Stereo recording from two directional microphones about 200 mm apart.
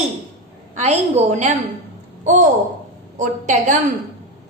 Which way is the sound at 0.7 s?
35° right (ahead or behind).